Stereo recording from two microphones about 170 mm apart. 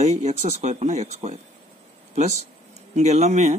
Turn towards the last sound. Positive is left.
turn(degrees=-40)  # may be behind; listen again after turning